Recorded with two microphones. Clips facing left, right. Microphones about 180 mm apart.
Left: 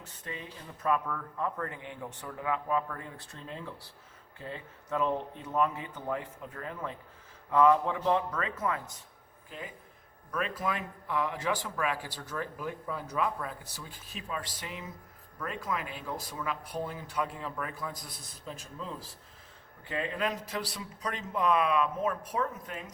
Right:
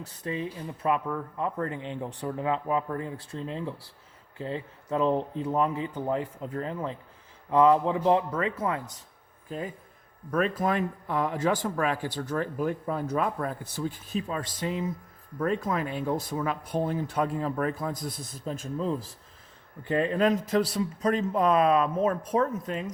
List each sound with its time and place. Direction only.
0.0 s speech: 35° right (ahead or behind)
0.8 s speech: 25° right (ahead or behind)
9.5 s speech: 40° right (ahead or behind)
14.3 s speech: 35° right (ahead or behind)